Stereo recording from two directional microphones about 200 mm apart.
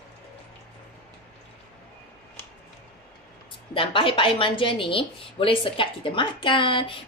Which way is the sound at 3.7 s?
25° left (ahead or behind).